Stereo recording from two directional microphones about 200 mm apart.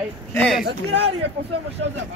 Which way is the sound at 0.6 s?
60° right (ahead or behind).